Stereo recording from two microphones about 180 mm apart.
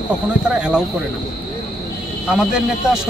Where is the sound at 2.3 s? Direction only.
5° right (ahead or behind).